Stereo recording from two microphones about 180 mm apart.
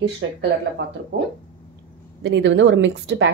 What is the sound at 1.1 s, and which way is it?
Speech, 70° right (ahead or behind).